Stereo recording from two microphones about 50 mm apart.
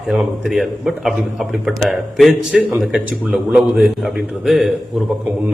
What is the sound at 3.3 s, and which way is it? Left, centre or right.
Speech, right.